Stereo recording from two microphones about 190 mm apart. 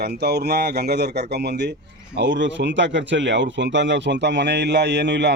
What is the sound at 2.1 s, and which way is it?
Speech, 70° right (ahead or behind).